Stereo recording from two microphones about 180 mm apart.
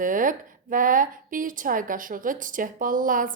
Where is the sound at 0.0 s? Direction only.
50° right (ahead or behind).